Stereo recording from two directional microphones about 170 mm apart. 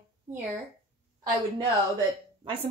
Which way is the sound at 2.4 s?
30° right (ahead or behind).